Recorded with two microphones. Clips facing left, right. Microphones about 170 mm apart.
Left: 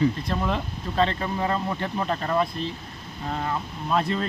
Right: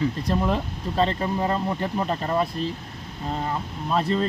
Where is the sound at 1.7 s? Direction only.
10° right (ahead or behind).